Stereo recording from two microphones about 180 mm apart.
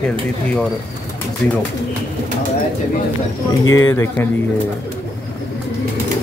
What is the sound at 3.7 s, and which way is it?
Speech, 15° left (ahead or behind).